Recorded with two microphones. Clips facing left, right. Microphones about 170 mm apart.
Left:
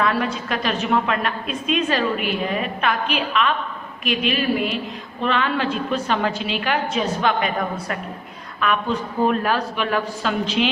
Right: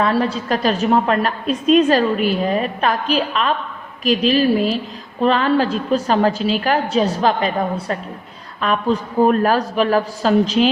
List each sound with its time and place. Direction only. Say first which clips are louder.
0.0 s a woman's voice: right 4 dB; 35° right (ahead or behind)